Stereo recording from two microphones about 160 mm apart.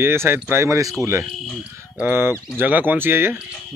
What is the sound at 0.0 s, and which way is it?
Speech, 15° right (ahead or behind).